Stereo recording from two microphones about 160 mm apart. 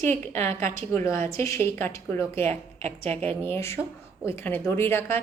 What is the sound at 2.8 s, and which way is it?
Speech, 45° right (ahead or behind).